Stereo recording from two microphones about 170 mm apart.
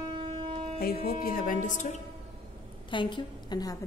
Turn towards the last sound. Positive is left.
turn(degrees=25)  # may be behind; listen again after turning